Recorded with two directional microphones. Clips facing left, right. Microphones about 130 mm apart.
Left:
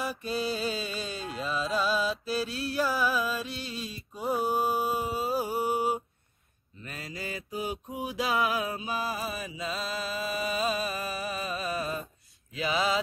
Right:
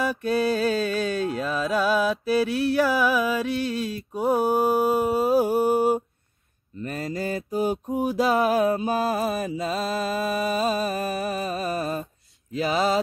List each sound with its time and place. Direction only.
0.0 s music: 60° right (ahead or behind)
6.8 s mantra: 45° right (ahead or behind)